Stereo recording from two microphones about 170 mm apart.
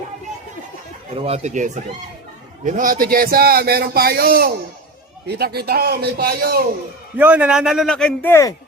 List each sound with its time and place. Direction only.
1.1 s a man's voice: 35° right (ahead or behind); by 6.7 s 65° right (ahead or behind)
7.2 s a man's voice: 10° right (ahead or behind); by 8.5 s 15° left (ahead or behind)